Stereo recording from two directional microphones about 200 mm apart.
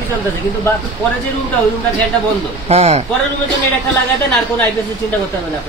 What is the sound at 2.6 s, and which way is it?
Speech, 30° right (ahead or behind).